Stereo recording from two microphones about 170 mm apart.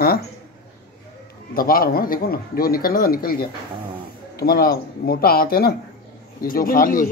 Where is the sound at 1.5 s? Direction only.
60° left (ahead or behind).